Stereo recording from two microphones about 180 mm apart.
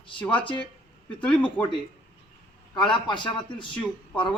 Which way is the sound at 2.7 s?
25° left (ahead or behind).